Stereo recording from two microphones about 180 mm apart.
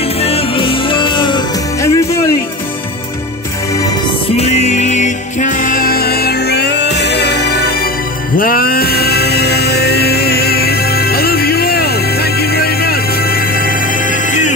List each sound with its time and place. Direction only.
0.2 s music: 30° left (ahead or behind)
4.4 s music: 40° left (ahead or behind)